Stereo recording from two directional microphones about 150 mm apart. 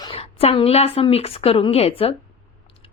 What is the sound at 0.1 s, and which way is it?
A woman's voice, 40° left (ahead or behind).